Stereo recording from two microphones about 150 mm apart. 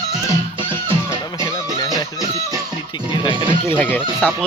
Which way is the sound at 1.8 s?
25° left (ahead or behind).